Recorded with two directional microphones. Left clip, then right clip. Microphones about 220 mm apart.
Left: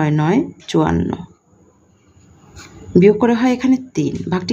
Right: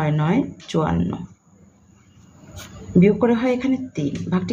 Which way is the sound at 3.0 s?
40° left (ahead or behind).